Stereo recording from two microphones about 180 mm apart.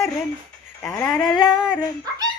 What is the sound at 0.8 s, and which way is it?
Female singing, 15° left (ahead or behind).